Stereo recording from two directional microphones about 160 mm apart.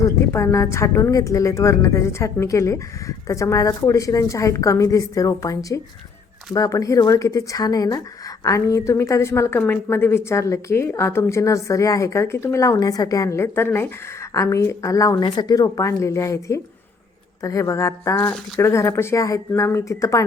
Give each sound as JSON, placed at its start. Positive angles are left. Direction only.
{"t": 0.0, "sound": "a woman's voice", "side_deg": 15}